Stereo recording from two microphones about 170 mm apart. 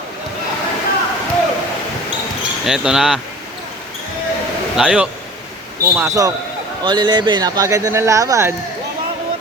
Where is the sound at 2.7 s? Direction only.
5° right (ahead or behind).